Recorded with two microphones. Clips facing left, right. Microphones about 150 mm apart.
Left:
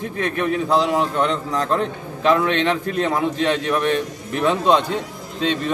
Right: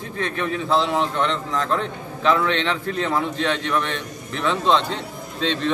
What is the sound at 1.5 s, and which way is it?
Speech, 35° left (ahead or behind).